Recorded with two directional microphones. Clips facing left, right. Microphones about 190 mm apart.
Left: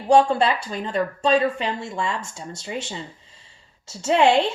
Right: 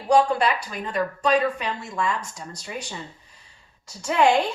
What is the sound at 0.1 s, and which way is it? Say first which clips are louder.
Speech: left 2 dB; 25° left (ahead or behind).